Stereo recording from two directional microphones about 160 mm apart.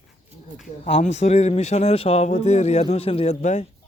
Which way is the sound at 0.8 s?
45° left (ahead or behind).